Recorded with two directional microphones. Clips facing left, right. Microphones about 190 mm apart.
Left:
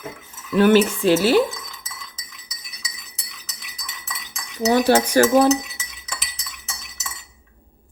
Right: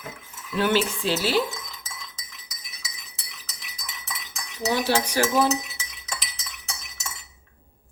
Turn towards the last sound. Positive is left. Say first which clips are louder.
# left 1 dB
turn(degrees=0)  # may be behind; listen again after turning